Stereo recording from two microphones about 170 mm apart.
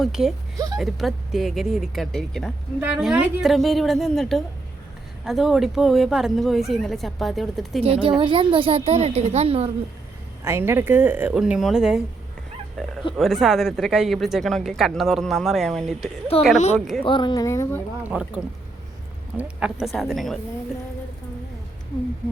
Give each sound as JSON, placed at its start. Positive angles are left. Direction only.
{"t": 0.0, "sound": "speech", "side_deg": 0}
{"t": 0.5, "sound": "speech", "side_deg": -20}
{"t": 0.8, "sound": "speech", "side_deg": 0}
{"t": 7.8, "sound": "a woman's voice", "side_deg": -35}
{"t": 10.4, "sound": "speech", "side_deg": -15}
{"t": 16.3, "sound": "speech", "side_deg": 35}
{"t": 18.0, "sound": "speech", "side_deg": -10}